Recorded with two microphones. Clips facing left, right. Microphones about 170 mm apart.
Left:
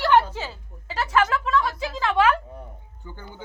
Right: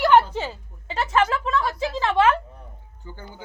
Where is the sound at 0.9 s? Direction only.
30° right (ahead or behind).